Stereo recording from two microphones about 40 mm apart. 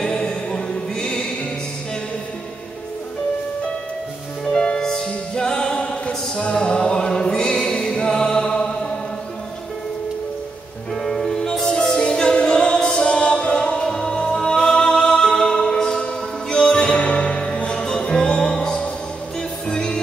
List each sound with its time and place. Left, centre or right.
0.1 s music: left
4.5 s music: left
10.9 s music: centre